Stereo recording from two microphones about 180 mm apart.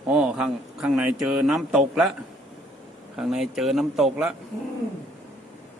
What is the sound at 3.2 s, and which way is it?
Speech, centre (ahead or behind).